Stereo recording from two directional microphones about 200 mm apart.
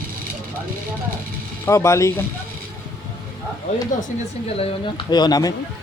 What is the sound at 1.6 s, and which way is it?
Speech, 15° left (ahead or behind).